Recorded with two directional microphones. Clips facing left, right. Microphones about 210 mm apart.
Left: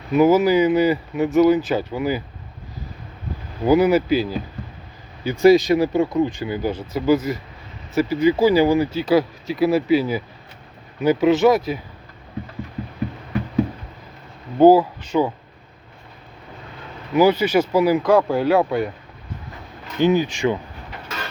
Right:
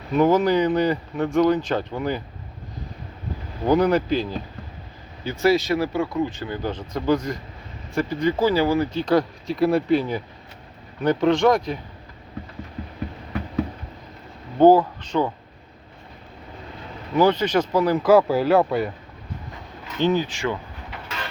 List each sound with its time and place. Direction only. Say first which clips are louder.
0.1 s speech: left 3 dB; 5° left (ahead or behind)
3.7 s speech: left 3 dB; 5° left (ahead or behind)
14.6 s speech: left 2 dB; 10° left (ahead or behind)
17.2 s speech: left 3 dB; 10° left (ahead or behind)
18.0 s speech: even; 5° right (ahead or behind)
20.0 s speech: left 4 dB; 10° left (ahead or behind)